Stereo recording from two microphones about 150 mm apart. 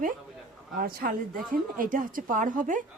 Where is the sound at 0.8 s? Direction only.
75° right (ahead or behind).